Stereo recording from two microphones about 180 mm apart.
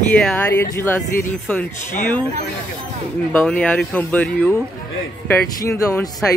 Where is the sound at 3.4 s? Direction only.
5° left (ahead or behind).